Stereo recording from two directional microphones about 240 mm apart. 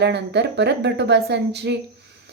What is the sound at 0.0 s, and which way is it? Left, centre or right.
Speech, right.